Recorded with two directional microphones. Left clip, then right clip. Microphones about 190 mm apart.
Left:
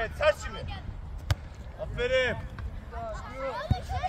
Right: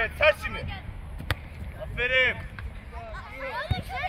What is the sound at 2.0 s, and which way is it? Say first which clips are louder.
Speech: right 3 dB; 60° left (ahead or behind).